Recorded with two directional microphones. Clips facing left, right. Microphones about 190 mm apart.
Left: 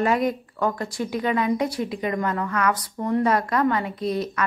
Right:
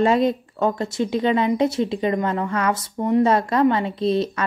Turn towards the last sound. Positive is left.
turn(degrees=-25)  # may be behind; listen again after turning